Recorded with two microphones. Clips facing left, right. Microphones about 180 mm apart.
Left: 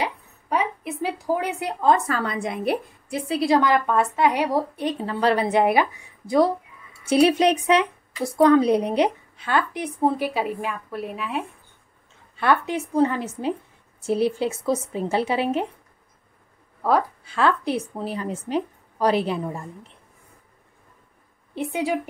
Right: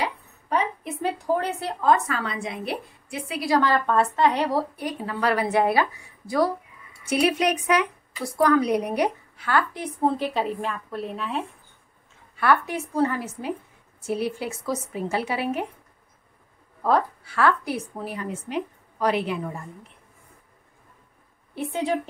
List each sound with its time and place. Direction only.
0.0 s a sound: 15° left (ahead or behind)
0.8 s a woman's voice: 5° left (ahead or behind)
1.8 s speech: 25° left (ahead or behind)
2.1 s a woman's voice: 45° left (ahead or behind)
3.3 s a woman's voice: 25° left (ahead or behind); by 11.4 s 5° left (ahead or behind)
12.4 s speech: 20° left (ahead or behind)
17.2 s speech: 20° left (ahead or behind)
21.5 s a woman's voice: 10° left (ahead or behind)